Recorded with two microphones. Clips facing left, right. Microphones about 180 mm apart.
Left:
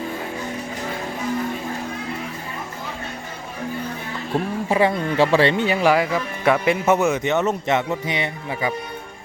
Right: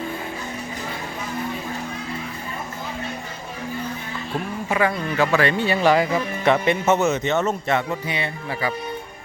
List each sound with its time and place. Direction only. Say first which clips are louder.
4.7 s a man's voice: left 3 dB; 30° left (ahead or behind)